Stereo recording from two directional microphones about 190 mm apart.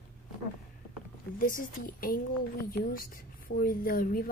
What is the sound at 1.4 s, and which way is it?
A woman's voice, 45° left (ahead or behind).